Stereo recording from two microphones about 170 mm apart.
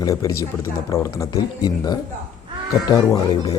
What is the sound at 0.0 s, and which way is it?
Speech, 20° left (ahead or behind).